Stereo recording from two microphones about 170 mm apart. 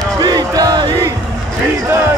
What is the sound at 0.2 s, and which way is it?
Music, 25° right (ahead or behind).